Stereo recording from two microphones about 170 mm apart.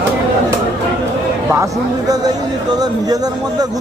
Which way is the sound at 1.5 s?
20° right (ahead or behind).